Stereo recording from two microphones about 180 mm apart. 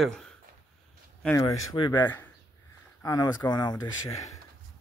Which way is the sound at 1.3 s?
25° left (ahead or behind).